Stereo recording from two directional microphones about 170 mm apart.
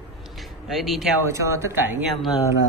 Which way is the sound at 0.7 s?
Centre (ahead or behind).